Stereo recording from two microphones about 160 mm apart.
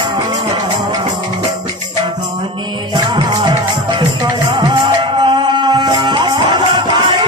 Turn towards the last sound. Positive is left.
turn(degrees=-25)  # may be behind; listen again after turning